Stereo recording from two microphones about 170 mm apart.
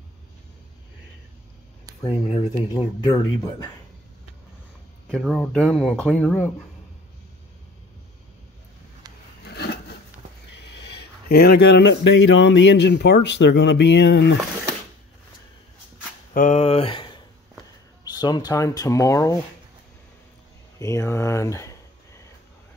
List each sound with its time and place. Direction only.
2.7 s speech: 20° left (ahead or behind)
5.0 s speech: 5° left (ahead or behind)
9.4 s a sound: 75° left (ahead or behind)
10.5 s speech: 80° left
16.3 s speech: 45° left (ahead or behind); by 19.3 s 20° left (ahead or behind)
20.8 s a sound: 20° left (ahead or behind)